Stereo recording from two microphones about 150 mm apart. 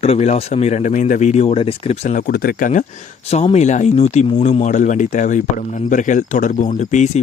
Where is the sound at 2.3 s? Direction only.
85° left; by 2.8 s 65° left (ahead or behind).